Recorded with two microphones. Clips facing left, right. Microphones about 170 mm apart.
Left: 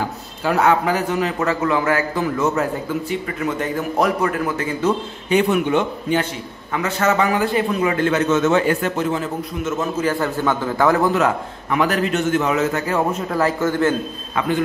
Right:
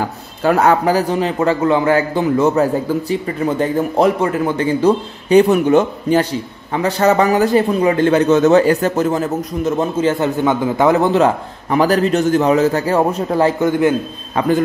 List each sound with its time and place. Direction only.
0.4 s a man's voice: 45° right (ahead or behind); by 13.9 s 15° right (ahead or behind)